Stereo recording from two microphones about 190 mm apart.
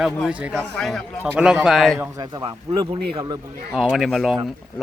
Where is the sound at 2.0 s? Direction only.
20° right (ahead or behind).